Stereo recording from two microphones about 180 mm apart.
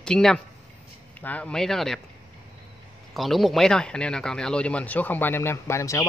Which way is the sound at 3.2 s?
Centre (ahead or behind).